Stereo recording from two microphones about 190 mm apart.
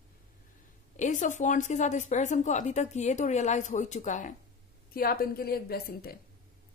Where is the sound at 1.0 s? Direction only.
40° left (ahead or behind).